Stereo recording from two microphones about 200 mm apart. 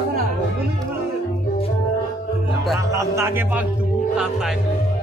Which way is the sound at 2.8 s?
15° right (ahead or behind).